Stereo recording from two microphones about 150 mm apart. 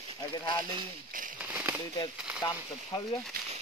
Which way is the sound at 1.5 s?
10° right (ahead or behind).